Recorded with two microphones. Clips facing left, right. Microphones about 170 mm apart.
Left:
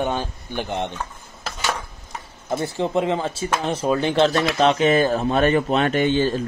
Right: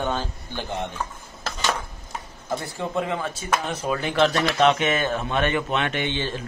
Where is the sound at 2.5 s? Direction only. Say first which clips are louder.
Left 5 dB; 25° left (ahead or behind).